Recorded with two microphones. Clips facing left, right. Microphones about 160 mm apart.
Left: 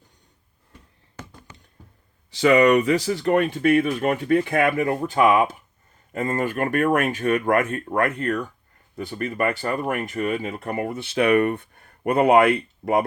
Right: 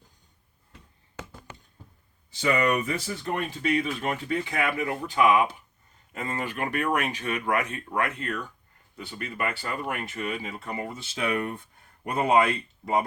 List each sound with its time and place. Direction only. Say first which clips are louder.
2.3 s speech: left 9 dB; 90° left; by 13.1 s 60° left (ahead or behind)